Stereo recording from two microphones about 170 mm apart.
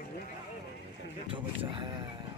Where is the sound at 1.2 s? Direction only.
30° right (ahead or behind).